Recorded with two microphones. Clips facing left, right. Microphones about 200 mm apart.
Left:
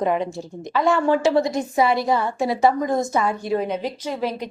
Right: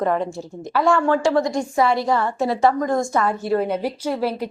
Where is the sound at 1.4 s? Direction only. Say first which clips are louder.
Even; 20° left (ahead or behind).